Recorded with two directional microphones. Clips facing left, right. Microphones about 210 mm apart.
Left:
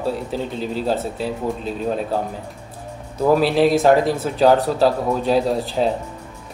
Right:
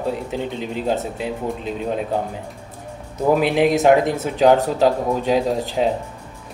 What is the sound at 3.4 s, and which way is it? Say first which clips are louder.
A man's voice: left 1 dB; 20° right (ahead or behind).